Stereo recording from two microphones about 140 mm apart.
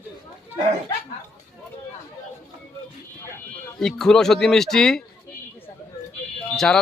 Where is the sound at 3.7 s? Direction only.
5° left (ahead or behind).